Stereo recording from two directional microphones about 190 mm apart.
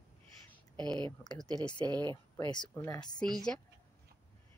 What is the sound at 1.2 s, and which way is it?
Speech, 20° left (ahead or behind).